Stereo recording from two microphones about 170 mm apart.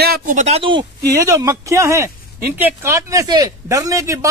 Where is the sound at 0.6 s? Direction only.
30° right (ahead or behind).